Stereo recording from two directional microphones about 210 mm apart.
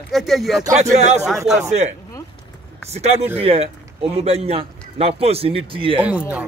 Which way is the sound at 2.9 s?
30° right (ahead or behind).